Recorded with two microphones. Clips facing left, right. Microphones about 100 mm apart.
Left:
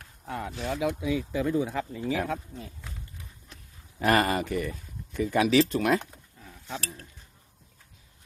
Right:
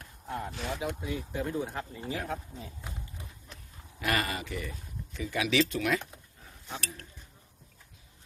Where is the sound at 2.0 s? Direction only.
90° left.